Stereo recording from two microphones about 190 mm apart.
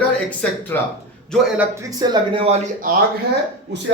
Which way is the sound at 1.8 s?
20° right (ahead or behind).